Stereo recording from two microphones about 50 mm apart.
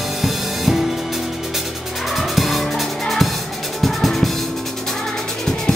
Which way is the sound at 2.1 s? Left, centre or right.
Centre.